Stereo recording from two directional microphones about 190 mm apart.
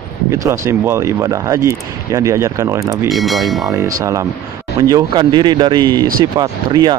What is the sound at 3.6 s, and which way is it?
Speech, 20° right (ahead or behind).